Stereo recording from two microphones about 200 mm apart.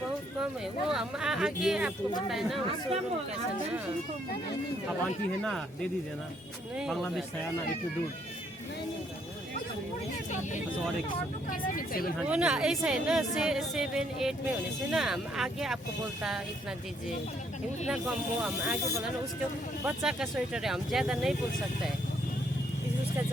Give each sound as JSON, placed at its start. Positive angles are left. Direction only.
{"t": 0.9, "sound": "a woman's voice", "side_deg": 0}
{"t": 6.7, "sound": "a woman's voice", "side_deg": 0}
{"t": 11.7, "sound": "speech", "side_deg": 45}
{"t": 12.2, "sound": "a woman's voice", "side_deg": -5}
{"t": 17.8, "sound": "a woman's voice", "side_deg": -5}
{"t": 19.8, "sound": "a woman's voice", "side_deg": -5}